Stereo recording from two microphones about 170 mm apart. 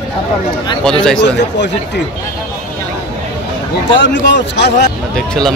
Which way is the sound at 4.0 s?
90° left.